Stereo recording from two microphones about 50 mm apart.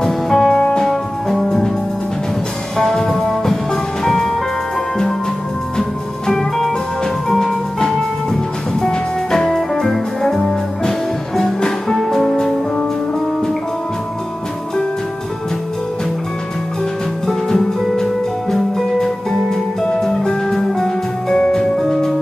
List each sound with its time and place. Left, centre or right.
0.0 s music: centre
0.8 s music: centre
2.8 s music: centre
5.8 s music: centre
17.3 s music: centre